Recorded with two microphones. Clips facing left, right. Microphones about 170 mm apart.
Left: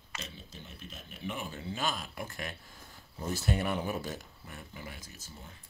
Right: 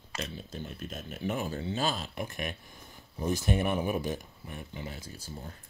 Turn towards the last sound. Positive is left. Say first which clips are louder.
# right 7 dB
turn(degrees=-40)  # may be behind; listen again after turning